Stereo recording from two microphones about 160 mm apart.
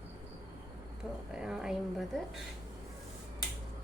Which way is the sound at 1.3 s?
5° right (ahead or behind).